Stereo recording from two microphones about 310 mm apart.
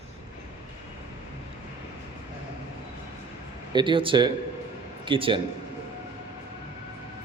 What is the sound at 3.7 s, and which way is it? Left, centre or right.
A man's voice, centre.